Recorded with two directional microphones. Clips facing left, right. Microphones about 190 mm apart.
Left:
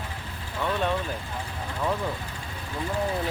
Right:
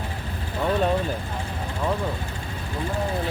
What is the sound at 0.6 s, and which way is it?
Vehicle, 35° right (ahead or behind).